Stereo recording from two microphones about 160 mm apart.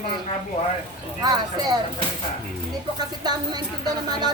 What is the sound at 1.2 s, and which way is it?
Speech, 25° right (ahead or behind).